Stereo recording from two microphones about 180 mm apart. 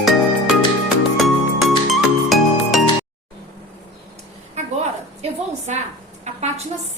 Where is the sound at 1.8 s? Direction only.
Centre (ahead or behind).